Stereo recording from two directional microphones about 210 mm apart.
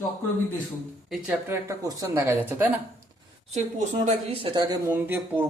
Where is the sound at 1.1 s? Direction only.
5° right (ahead or behind).